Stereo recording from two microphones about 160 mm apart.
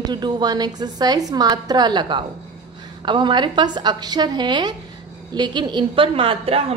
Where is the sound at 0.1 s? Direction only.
25° right (ahead or behind).